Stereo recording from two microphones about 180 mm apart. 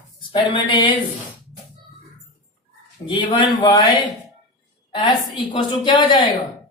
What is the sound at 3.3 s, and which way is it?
Speech, 25° left (ahead or behind).